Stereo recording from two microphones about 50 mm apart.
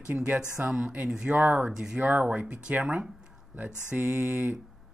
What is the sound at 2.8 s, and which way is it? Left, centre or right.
Speech, right.